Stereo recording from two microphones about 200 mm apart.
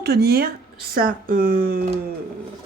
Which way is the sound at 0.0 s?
55° right (ahead or behind).